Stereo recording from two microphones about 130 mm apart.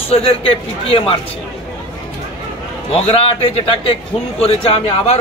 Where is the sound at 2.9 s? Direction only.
45° left (ahead or behind).